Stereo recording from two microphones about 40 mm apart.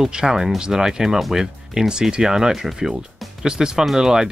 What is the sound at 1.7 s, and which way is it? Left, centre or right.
Speech, centre.